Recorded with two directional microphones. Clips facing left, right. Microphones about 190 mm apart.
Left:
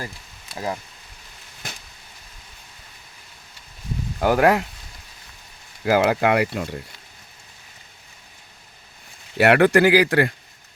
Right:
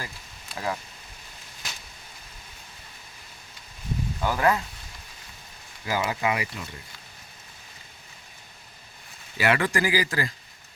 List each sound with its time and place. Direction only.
1.6 s a sound: 55° left (ahead or behind)
4.2 s speech: 70° left (ahead or behind)
5.8 s speech: 70° left (ahead or behind)
9.4 s speech: 65° left (ahead or behind)